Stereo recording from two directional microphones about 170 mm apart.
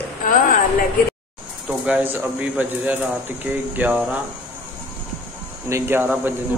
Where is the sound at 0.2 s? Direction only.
50° left (ahead or behind).